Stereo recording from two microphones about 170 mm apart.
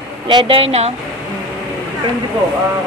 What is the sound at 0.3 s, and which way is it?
Speech, 30° right (ahead or behind).